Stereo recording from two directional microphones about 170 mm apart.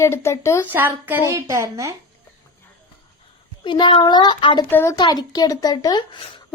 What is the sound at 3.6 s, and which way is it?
Speech, 25° left (ahead or behind).